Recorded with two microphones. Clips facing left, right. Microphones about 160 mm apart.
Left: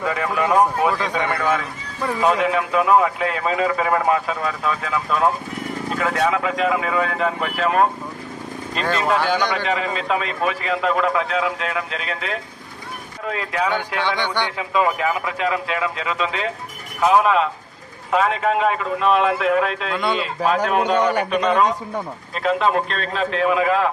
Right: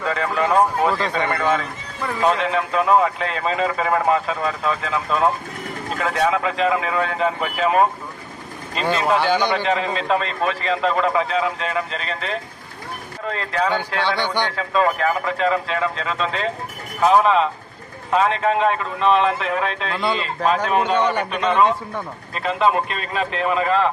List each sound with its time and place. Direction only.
0.0 s speech: 10° left (ahead or behind)
8.9 s speech: centre (ahead or behind)